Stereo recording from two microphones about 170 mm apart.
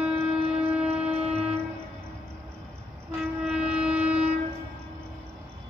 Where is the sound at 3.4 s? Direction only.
5° right (ahead or behind).